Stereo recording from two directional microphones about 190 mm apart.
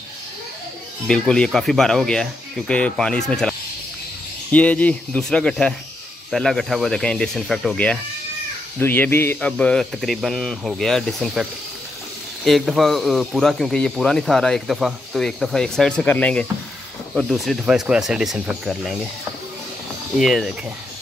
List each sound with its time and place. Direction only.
1.0 s a man's voice: 5° left (ahead or behind)
12.4 s a man's voice: centre (ahead or behind)
20.2 s a man's voice: centre (ahead or behind)